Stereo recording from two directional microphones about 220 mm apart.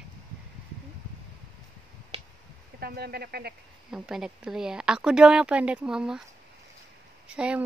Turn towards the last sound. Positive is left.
turn(degrees=-5)  # may be behind; listen again after turning